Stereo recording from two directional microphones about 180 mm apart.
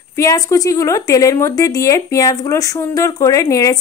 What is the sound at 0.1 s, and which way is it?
Speech, 20° left (ahead or behind).